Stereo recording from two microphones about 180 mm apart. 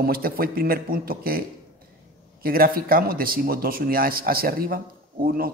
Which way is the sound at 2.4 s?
55° right (ahead or behind).